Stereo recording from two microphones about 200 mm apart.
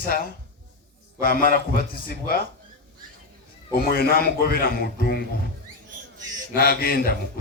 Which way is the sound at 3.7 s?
50° left (ahead or behind).